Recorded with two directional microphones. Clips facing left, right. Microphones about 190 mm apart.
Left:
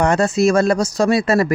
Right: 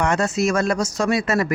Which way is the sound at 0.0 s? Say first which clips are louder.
Left 5 dB; 35° left (ahead or behind).